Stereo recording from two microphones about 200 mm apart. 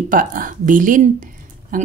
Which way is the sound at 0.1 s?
45° right (ahead or behind).